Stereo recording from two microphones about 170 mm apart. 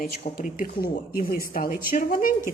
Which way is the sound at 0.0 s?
55° left (ahead or behind).